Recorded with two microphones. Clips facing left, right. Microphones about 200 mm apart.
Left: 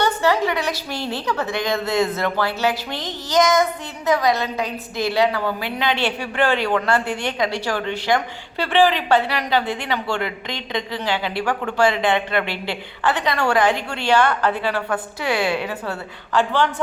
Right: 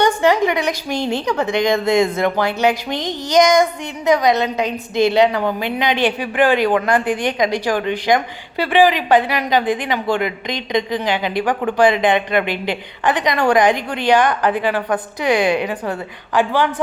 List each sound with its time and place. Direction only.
0.2 s speech: 15° right (ahead or behind)